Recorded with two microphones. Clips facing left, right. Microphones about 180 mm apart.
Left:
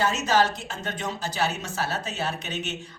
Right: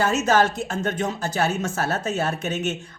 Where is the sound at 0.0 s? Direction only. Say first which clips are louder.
Right 3 dB; 50° right (ahead or behind).